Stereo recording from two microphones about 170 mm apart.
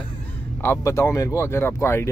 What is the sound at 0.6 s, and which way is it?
Speech, 15° left (ahead or behind).